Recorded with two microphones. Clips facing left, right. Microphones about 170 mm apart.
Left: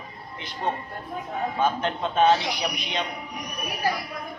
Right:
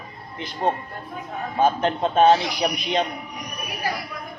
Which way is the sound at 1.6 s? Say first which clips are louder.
Right 6 dB; 40° right (ahead or behind).